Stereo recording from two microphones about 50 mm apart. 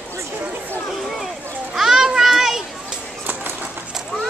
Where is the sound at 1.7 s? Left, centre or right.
Centre.